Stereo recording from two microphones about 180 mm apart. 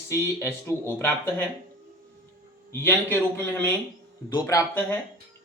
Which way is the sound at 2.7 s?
10° left (ahead or behind).